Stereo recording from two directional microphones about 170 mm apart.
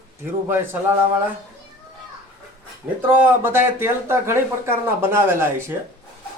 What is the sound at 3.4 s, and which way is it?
Speech, 15° right (ahead or behind).